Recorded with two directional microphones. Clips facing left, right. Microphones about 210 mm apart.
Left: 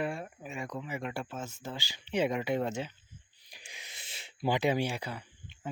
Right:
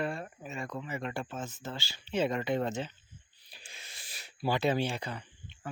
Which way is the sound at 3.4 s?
15° left (ahead or behind).